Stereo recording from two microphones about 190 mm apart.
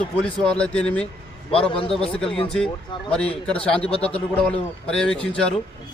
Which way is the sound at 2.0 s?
30° left (ahead or behind).